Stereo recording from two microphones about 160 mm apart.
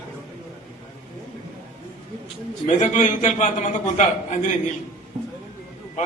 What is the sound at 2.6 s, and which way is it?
A man's voice, 50° left (ahead or behind).